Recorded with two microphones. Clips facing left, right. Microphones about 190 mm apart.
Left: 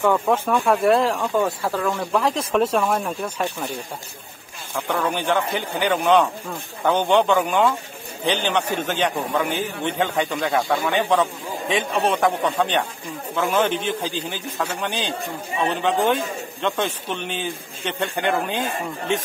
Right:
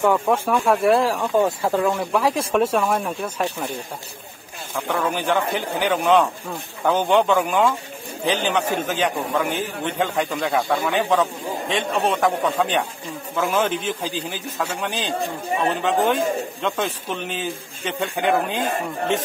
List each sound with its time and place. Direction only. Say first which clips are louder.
0.0 s a man's voice: even; 5° right (ahead or behind)
1.4 s speech: right 3 dB; 20° right (ahead or behind)
2.0 s a man's voice: right 1 dB; 5° right (ahead or behind)
4.7 s a man's voice: even; centre (ahead or behind)